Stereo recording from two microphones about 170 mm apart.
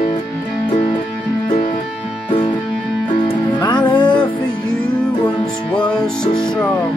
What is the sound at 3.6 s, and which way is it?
Music, 25° left (ahead or behind).